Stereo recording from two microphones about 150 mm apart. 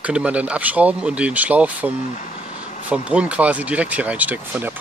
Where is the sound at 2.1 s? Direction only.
55° left (ahead or behind).